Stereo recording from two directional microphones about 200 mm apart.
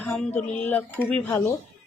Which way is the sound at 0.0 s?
10° left (ahead or behind).